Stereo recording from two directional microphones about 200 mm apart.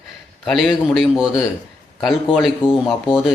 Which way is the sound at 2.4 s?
Centre (ahead or behind).